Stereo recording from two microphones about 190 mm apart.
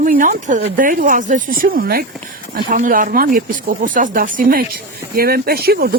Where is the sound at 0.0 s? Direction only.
45° right (ahead or behind).